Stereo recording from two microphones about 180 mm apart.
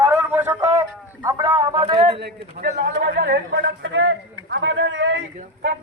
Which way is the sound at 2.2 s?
70° right (ahead or behind).